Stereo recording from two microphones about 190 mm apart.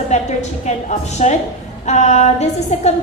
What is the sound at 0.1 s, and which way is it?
A woman's voice, 35° left (ahead or behind).